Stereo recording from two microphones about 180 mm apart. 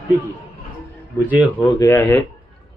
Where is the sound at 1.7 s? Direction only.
15° left (ahead or behind).